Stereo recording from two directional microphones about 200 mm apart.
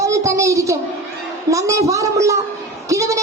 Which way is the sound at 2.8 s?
15° right (ahead or behind).